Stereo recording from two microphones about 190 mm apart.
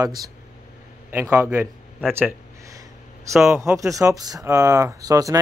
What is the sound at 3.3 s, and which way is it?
Speech, centre (ahead or behind).